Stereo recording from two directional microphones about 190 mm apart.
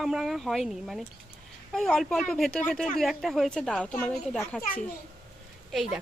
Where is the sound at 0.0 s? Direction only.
Centre (ahead or behind).